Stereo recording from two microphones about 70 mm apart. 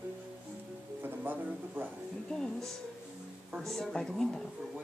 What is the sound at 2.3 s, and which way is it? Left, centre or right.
A woman's voice, centre.